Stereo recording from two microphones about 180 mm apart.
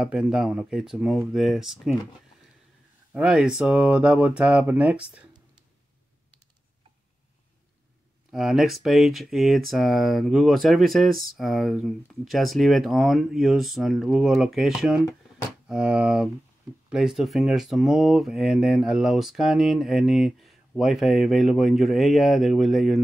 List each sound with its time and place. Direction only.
0.0 s speech: 5° right (ahead or behind)
3.1 s speech: 5° right (ahead or behind)
8.3 s speech: centre (ahead or behind)